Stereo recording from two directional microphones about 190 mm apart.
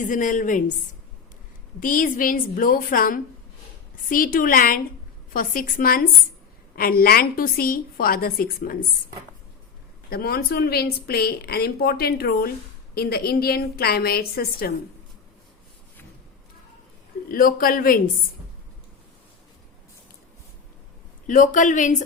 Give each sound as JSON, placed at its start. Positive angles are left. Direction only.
{"t": 0.0, "sound": "a woman's voice", "side_deg": 45}
{"t": 1.8, "sound": "a woman's voice", "side_deg": 45}
{"t": 10.1, "sound": "a woman's voice", "side_deg": 55}
{"t": 17.2, "sound": "a woman's voice", "side_deg": 50}
{"t": 21.2, "sound": "a woman's voice", "side_deg": 45}